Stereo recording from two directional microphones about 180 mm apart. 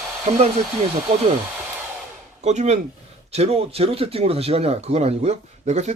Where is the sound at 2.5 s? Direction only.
40° right (ahead or behind).